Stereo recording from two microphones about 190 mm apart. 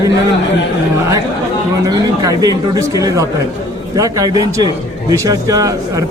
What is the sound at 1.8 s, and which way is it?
A man's voice, 20° right (ahead or behind).